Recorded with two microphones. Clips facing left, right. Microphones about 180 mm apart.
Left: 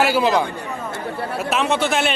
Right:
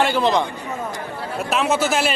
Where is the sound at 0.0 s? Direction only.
5° left (ahead or behind).